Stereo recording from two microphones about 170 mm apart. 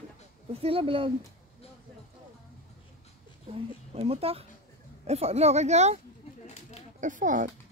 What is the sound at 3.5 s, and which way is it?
Speech, 35° right (ahead or behind).